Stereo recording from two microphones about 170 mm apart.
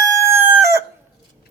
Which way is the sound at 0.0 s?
20° right (ahead or behind).